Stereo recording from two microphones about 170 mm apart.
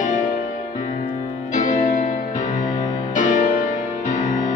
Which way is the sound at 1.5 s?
45° left (ahead or behind).